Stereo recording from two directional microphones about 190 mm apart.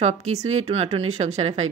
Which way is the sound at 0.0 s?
35° right (ahead or behind).